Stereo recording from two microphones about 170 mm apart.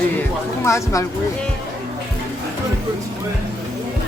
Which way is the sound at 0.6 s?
20° left (ahead or behind).